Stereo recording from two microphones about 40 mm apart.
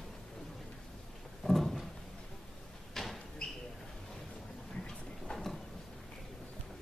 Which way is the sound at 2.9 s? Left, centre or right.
Centre.